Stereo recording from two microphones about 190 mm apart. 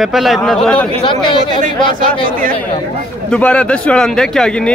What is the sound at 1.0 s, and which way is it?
Speech, 25° left (ahead or behind).